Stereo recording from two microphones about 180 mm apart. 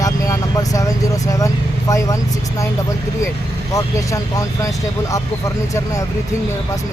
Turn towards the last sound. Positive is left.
turn(degrees=20)  # may be behind; listen again after turning